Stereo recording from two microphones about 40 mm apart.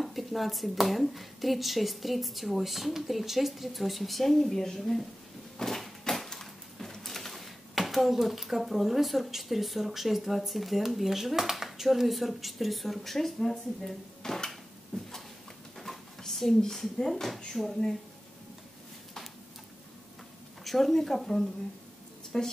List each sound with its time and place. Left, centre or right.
0.0 s a woman's voice: centre
5.6 s a sound: centre
14.9 s a sound: left
15.8 s cupboard open or close: centre
20.6 s speech: centre
22.3 s speech: left